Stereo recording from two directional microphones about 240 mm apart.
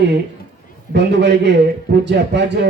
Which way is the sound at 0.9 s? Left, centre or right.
Right.